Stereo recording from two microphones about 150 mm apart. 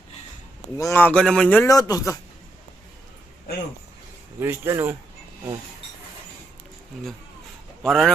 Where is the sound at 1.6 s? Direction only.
25° left (ahead or behind).